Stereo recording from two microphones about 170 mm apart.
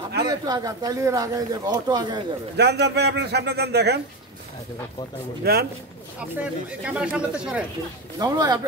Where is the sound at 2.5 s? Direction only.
75° right (ahead or behind).